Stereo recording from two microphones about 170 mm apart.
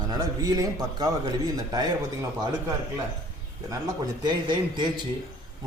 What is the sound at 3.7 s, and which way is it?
A man's voice, 25° right (ahead or behind).